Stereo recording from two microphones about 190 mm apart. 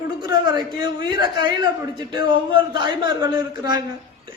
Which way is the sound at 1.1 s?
25° right (ahead or behind).